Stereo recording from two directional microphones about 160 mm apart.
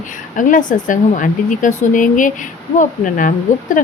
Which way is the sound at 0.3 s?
55° left (ahead or behind).